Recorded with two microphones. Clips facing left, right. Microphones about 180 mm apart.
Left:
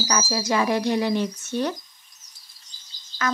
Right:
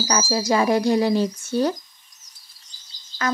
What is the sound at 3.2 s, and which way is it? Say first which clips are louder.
Music: right 2 dB; 30° right (ahead or behind).